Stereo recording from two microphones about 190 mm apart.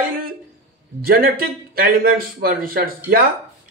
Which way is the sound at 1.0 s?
50° right (ahead or behind).